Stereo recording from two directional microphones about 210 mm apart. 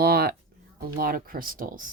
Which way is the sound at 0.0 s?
45° right (ahead or behind).